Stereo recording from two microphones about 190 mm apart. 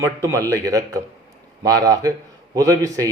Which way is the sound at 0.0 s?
15° right (ahead or behind).